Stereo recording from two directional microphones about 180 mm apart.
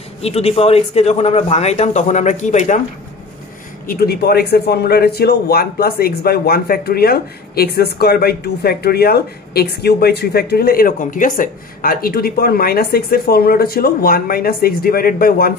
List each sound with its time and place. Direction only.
0.2 s speech: 35° left (ahead or behind)
3.8 s a man's voice: 55° left (ahead or behind)